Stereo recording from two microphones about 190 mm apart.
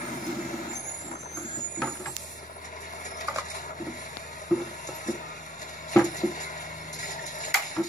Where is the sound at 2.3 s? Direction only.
40° left (ahead or behind).